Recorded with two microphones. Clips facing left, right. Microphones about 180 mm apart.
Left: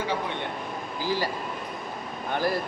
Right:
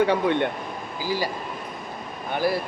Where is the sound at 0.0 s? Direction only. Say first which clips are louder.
Right 9 dB; 65° right (ahead or behind).